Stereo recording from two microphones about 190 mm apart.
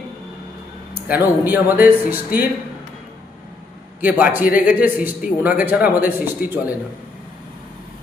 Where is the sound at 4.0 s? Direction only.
10° right (ahead or behind).